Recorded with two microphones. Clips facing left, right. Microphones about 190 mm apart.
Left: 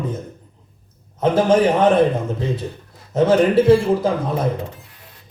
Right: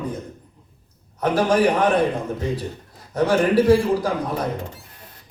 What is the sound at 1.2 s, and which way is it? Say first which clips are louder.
Speech: left 3 dB; 25° left (ahead or behind).